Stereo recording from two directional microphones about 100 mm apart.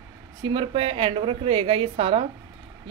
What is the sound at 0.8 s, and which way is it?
A man's voice, 65° right (ahead or behind).